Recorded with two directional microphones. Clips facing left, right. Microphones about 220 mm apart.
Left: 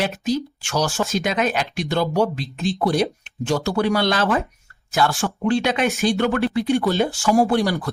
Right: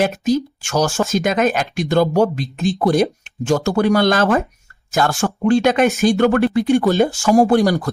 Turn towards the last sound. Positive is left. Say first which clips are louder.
# right 5 dB
turn(degrees=-45)  # may be behind; listen again after turning